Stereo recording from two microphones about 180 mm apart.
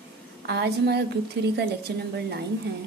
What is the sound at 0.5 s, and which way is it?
A woman's voice, 65° right (ahead or behind).